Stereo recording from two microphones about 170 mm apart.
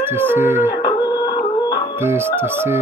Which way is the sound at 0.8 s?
25° left (ahead or behind).